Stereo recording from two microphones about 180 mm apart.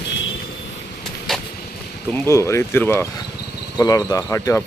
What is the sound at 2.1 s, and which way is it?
Speech, 10° left (ahead or behind).